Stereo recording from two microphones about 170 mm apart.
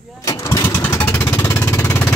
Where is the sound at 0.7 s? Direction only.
10° left (ahead or behind).